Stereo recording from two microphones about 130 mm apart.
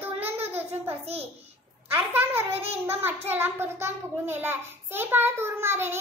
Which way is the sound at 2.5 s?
50° right (ahead or behind).